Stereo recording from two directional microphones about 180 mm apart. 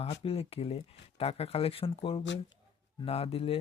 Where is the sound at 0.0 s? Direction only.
30° left (ahead or behind).